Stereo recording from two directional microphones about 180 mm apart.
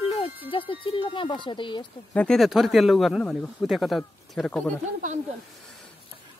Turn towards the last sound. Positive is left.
turn(degrees=-40)  # may be behind; listen again after turning